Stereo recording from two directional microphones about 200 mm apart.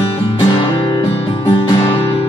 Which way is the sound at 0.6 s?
20° left (ahead or behind).